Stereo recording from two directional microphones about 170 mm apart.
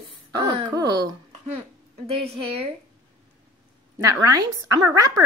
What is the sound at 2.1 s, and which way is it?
Speech, 35° right (ahead or behind).